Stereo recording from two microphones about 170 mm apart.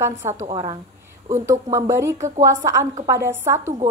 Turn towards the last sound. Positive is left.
turn(degrees=-15)  # may be behind; listen again after turning